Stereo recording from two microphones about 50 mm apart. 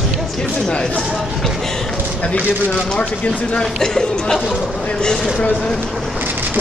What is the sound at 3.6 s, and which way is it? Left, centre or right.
Speech, centre.